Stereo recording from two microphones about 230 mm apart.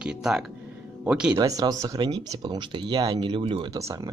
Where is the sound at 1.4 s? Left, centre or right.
Centre.